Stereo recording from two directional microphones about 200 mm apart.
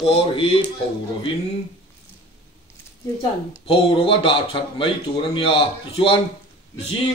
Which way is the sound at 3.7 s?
25° left (ahead or behind).